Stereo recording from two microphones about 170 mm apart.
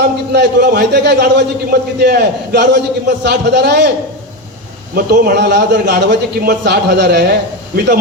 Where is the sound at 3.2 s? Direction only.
85° right.